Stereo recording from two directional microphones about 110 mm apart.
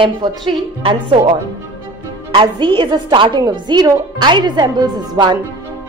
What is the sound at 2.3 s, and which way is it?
Speech, 45° right (ahead or behind).